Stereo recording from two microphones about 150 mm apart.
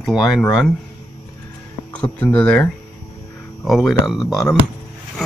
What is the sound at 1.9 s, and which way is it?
Speech, 10° left (ahead or behind).